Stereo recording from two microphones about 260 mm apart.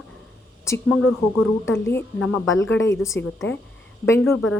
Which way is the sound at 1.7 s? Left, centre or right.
Centre.